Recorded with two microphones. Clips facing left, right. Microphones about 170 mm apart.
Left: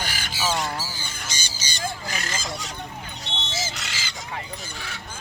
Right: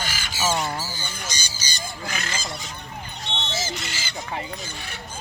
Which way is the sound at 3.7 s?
85° left.